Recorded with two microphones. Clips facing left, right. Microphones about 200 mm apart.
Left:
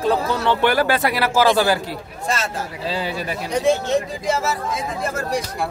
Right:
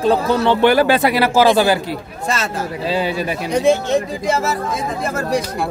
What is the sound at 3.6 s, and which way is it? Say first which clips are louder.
Speech: right 3 dB; 60° right (ahead or behind).